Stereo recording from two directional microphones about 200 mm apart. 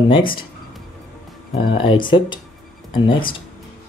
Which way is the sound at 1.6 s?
25° left (ahead or behind).